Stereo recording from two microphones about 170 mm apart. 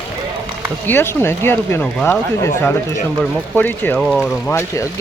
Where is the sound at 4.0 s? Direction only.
Centre (ahead or behind).